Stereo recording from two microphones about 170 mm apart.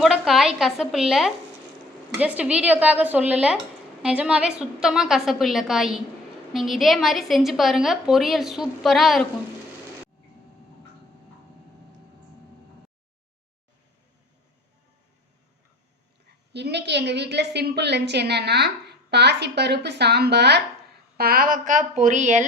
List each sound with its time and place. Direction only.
0.0 s a woman's voice: centre (ahead or behind)
16.5 s a woman's voice: 85° right
21.2 s a woman's voice: 60° right (ahead or behind)